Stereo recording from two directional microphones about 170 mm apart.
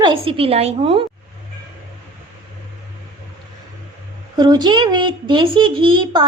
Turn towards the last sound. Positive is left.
turn(degrees=-30)  # may be behind; listen again after turning